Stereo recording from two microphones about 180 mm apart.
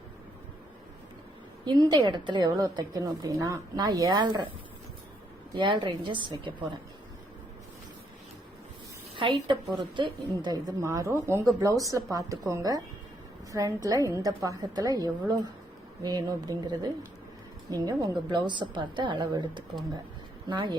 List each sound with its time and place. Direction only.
1.6 s a woman's voice: 25° right (ahead or behind)
5.5 s a woman's voice: 25° right (ahead or behind)
9.1 s a woman's voice: 30° right (ahead or behind)